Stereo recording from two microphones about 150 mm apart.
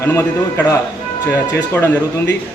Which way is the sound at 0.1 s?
15° left (ahead or behind).